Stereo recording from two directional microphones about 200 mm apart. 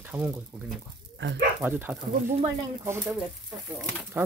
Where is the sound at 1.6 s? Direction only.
10° right (ahead or behind).